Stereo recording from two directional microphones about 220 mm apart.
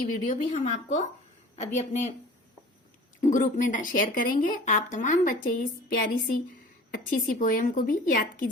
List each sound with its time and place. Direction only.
0.0 s speech: 35° left (ahead or behind)
3.2 s speech: 35° left (ahead or behind)